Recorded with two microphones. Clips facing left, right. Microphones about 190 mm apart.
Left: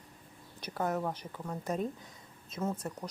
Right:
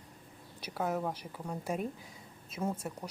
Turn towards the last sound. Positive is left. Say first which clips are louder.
# even
turn(degrees=-5)  # may be behind; listen again after turning